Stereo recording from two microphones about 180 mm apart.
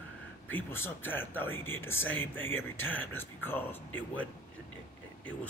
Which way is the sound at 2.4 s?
90° left.